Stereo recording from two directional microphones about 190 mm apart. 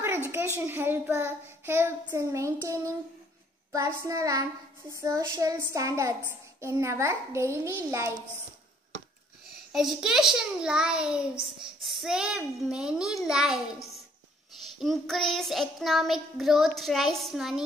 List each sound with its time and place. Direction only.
0.7 s a child's voice: 10° right (ahead or behind)
9.7 s child singing: centre (ahead or behind)
14.8 s child singing: centre (ahead or behind)